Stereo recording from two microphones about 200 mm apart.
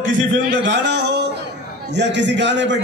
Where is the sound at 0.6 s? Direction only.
60° right (ahead or behind).